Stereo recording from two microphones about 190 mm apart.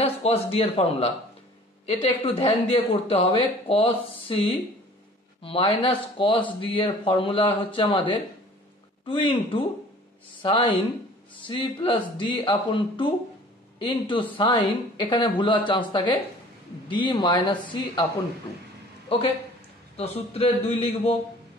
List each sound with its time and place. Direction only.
0.0 s a man's voice: 30° left (ahead or behind)
19.0 s a woman's voice: 30° left (ahead or behind)